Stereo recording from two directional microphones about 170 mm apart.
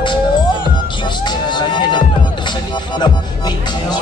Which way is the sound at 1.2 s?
25° left (ahead or behind).